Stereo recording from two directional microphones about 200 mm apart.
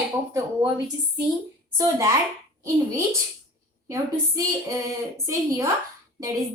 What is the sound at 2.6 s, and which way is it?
A woman's voice, 15° right (ahead or behind).